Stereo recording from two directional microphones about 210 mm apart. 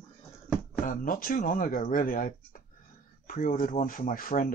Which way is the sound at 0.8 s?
40° left (ahead or behind).